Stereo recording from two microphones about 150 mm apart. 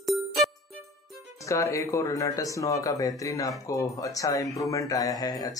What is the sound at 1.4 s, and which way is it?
Speech, 20° left (ahead or behind).